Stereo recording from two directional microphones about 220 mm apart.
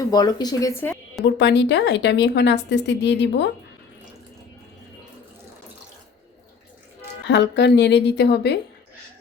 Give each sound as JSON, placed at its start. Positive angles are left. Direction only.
{"t": 0.1, "sound": "speech", "side_deg": 20}
{"t": 1.4, "sound": "a woman's voice", "side_deg": 50}
{"t": 7.3, "sound": "a woman's voice", "side_deg": 50}